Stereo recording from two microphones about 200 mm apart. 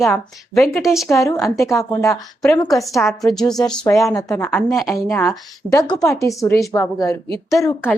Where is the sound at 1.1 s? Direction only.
15° left (ahead or behind).